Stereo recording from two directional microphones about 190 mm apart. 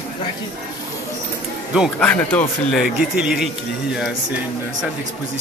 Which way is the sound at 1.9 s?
10° left (ahead or behind).